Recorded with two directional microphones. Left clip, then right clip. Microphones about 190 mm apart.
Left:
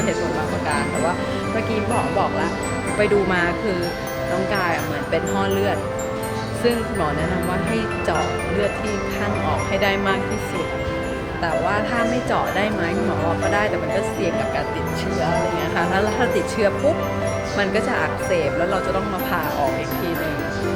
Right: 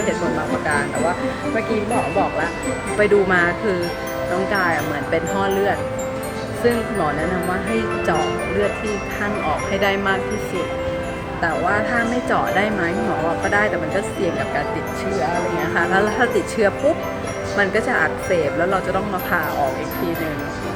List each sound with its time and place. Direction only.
3.0 s wind chime: 20° right (ahead or behind)
5.1 s wind chime: 20° right (ahead or behind)
9.8 s wind chime: 20° right (ahead or behind)
12.3 s wind chime: 20° right (ahead or behind)
15.7 s wind chime: 20° right (ahead or behind)